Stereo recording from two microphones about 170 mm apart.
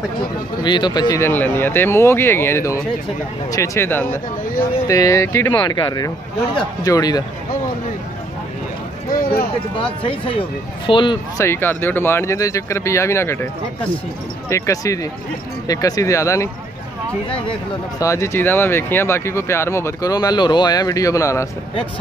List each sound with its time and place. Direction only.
0.7 s speech: 25° left (ahead or behind)
9.1 s a sound: 60° left (ahead or behind)
10.0 s speech: 30° left (ahead or behind)
11.4 s speech: 15° left (ahead or behind)
14.5 s speech: 20° left (ahead or behind)
17.3 s speech: 30° left (ahead or behind)
18.0 s speech: 15° left (ahead or behind)